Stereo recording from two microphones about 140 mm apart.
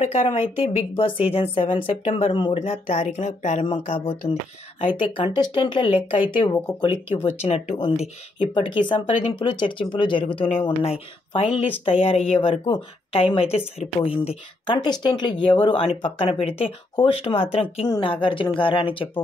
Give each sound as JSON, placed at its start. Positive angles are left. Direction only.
{"t": 0.0, "sound": "speech", "side_deg": 50}
{"t": 1.7, "sound": "speech", "side_deg": 55}
{"t": 2.3, "sound": "speech", "side_deg": 35}
{"t": 2.6, "sound": "speech", "side_deg": 50}
{"t": 3.6, "sound": "speech", "side_deg": 40}
{"t": 7.4, "sound": "speech", "side_deg": 50}
{"t": 8.4, "sound": "speech", "side_deg": 35}
{"t": 17.8, "sound": "speech", "side_deg": 35}